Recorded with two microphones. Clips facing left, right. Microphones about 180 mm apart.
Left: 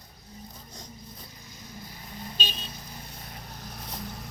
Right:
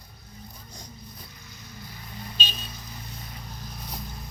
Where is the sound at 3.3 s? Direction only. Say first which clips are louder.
Right 1 dB; 65° left (ahead or behind).